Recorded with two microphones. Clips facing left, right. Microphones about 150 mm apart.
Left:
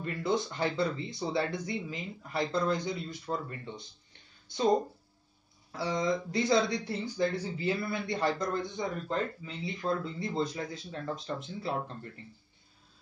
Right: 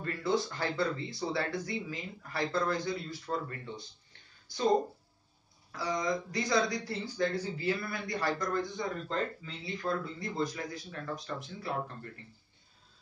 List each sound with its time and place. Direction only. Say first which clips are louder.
0.0 s speech: even; 20° left (ahead or behind)
5.7 s speech: left 2 dB; 25° left (ahead or behind)